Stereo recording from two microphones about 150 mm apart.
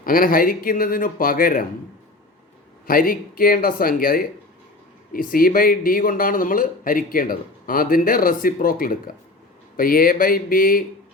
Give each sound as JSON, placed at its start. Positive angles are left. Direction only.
{"t": 0.0, "sound": "a man's voice", "side_deg": 70}
{"t": 2.8, "sound": "a man's voice", "side_deg": 70}